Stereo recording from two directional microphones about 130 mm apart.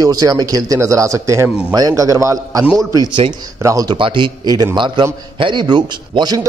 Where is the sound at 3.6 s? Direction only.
30° right (ahead or behind).